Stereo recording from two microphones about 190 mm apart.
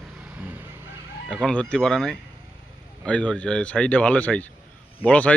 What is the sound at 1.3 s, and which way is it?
Speech, 5° left (ahead or behind).